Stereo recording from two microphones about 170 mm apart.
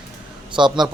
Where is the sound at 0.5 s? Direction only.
25° right (ahead or behind).